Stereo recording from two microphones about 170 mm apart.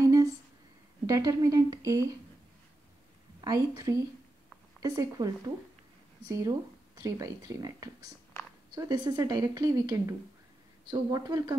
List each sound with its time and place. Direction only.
0.0 s a sound: 20° right (ahead or behind)
1.0 s a woman's voice: 20° right (ahead or behind)
3.3 s a woman's voice: 20° right (ahead or behind)